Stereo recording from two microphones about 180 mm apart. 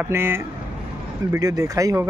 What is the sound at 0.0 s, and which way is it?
Speech, 15° right (ahead or behind).